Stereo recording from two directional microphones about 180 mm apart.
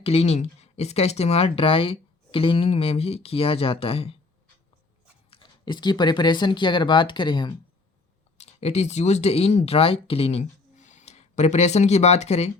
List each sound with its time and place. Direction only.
0.0 s speech: 35° left (ahead or behind)
5.3 s speech: 25° left (ahead or behind)
8.4 s speech: 35° left (ahead or behind)